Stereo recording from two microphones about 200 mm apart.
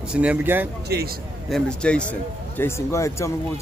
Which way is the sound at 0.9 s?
55° right (ahead or behind).